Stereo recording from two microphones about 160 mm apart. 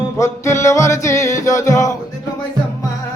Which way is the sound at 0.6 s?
20° left (ahead or behind).